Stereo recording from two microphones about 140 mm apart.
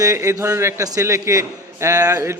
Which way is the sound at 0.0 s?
25° right (ahead or behind).